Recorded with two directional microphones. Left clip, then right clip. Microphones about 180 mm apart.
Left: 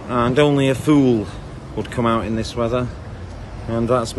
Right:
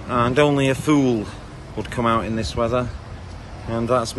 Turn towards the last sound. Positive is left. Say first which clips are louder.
# left 1 dB
turn(degrees=5)  # may be behind; listen again after turning